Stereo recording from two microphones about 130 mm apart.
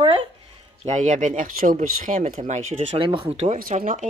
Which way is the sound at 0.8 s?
70° right (ahead or behind).